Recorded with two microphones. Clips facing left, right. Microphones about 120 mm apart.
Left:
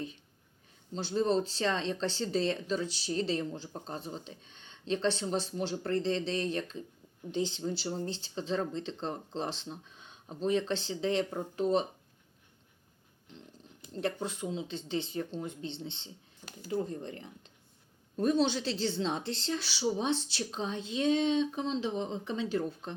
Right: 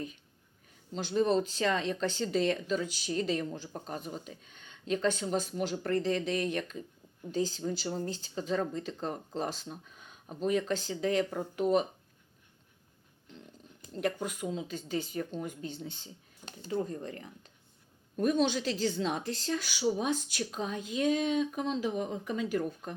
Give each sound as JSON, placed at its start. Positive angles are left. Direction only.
{"t": 1.0, "sound": "speech", "side_deg": 30}
{"t": 14.0, "sound": "speech", "side_deg": 30}
{"t": 16.6, "sound": "speech", "side_deg": -25}
{"t": 16.8, "sound": "speech", "side_deg": 25}